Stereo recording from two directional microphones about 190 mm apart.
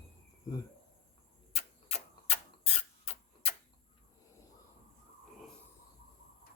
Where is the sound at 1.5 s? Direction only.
30° left (ahead or behind).